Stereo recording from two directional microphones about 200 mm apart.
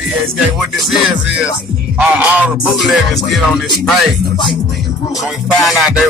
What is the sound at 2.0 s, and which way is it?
Music, 5° right (ahead or behind).